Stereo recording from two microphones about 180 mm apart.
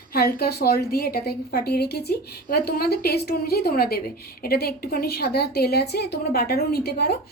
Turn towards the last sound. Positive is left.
turn(degrees=60)  # may be behind; listen again after turning